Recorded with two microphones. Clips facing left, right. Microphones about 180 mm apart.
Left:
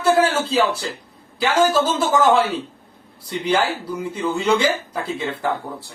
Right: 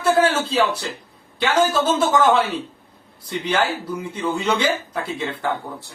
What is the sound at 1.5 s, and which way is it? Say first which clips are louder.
Speech: left 1 dB; 10° left (ahead or behind).